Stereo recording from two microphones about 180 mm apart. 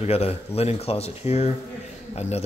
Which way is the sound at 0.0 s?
35° left (ahead or behind).